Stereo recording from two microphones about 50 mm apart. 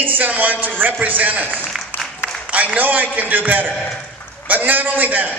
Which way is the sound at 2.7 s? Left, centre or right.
Right.